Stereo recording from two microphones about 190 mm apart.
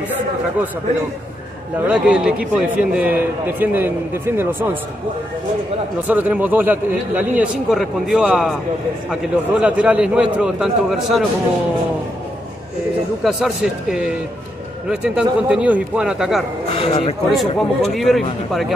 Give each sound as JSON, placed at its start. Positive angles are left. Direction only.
{"t": 1.9, "sound": "a man's voice", "side_deg": -5}
{"t": 6.0, "sound": "a man's voice", "side_deg": -10}
{"t": 13.2, "sound": "a man's voice", "side_deg": -5}
{"t": 16.7, "sound": "a man's voice", "side_deg": 30}
{"t": 17.4, "sound": "a man's voice", "side_deg": 0}